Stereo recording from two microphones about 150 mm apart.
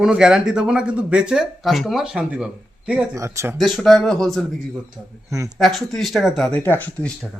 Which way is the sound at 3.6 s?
Centre (ahead or behind).